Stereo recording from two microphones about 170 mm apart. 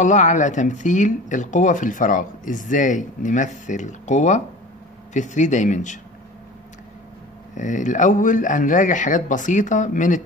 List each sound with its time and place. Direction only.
0.0 s speech: 45° left (ahead or behind)
7.5 s speech: 45° left (ahead or behind)